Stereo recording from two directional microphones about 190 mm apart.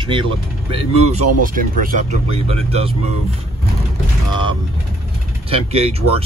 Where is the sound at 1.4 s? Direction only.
45° right (ahead or behind).